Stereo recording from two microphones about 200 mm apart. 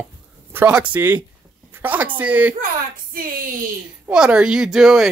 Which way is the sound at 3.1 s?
45° right (ahead or behind).